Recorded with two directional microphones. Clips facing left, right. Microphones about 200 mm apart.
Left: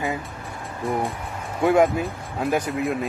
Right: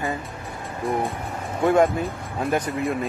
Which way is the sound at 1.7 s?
Centre (ahead or behind).